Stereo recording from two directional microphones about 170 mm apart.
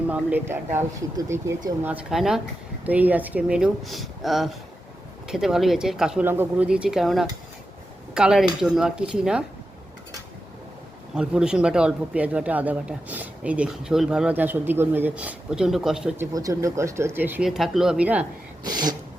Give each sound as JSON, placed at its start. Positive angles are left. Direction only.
{"t": 0.1, "sound": "a man's voice", "side_deg": -10}
{"t": 11.1, "sound": "a man's voice", "side_deg": -5}
{"t": 16.1, "sound": "a man's voice", "side_deg": -15}
{"t": 18.6, "sound": "a sound", "side_deg": -25}